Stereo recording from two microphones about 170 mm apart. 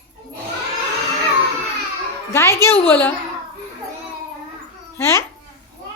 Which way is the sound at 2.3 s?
15° left (ahead or behind).